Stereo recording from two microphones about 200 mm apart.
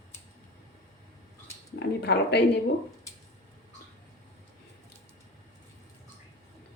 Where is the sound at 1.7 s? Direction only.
55° left (ahead or behind).